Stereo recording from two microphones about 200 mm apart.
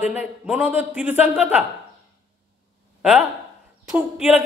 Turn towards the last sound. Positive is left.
turn(degrees=-5)  # may be behind; listen again after turning